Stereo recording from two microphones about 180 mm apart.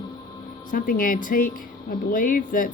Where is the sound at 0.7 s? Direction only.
50° left (ahead or behind).